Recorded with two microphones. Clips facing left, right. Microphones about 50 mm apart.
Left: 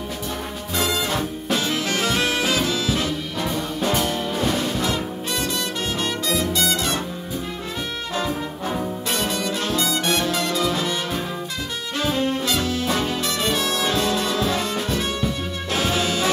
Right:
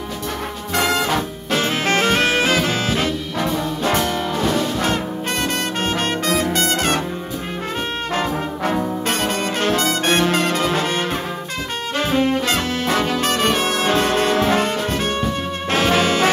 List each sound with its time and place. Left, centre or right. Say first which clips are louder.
0.7 s music: right 5 dB; right
4.0 s brass instrument: right 3 dB; centre
5.4 s music: right 5 dB; right
8.7 s brass instrument: right 4 dB; right
12.0 s music: right 4 dB; right
12.4 s brass instrument: right 3 dB; right
15.7 s music: right 6 dB; right